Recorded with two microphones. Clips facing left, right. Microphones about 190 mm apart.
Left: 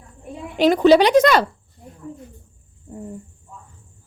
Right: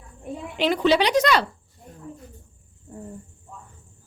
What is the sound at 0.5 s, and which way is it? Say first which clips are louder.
Speech: left 7 dB; 45° left (ahead or behind).